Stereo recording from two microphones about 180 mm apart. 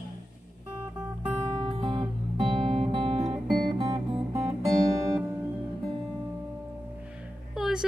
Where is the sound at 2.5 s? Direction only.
30° right (ahead or behind).